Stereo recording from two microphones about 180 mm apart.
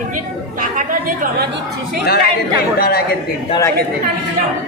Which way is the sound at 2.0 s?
60° left (ahead or behind).